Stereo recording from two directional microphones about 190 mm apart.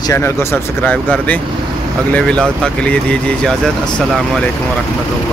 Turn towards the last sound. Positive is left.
turn(degrees=5)  # may be behind; listen again after turning